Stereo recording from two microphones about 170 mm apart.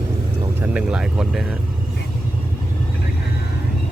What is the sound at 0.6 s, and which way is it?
Speech, 5° right (ahead or behind).